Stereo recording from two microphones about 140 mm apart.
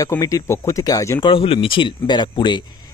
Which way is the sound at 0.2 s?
25° left (ahead or behind).